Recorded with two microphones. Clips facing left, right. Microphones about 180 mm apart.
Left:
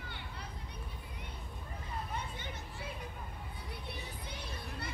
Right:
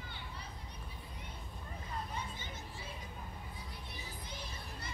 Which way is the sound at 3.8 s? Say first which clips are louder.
Left 3 dB; 65° left (ahead or behind).